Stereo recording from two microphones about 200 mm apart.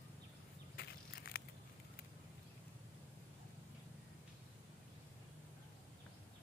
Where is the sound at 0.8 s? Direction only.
50° left (ahead or behind).